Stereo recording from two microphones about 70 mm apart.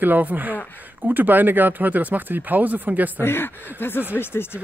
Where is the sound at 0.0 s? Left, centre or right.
Right.